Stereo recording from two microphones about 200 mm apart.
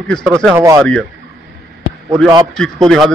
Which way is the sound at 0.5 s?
15° right (ahead or behind).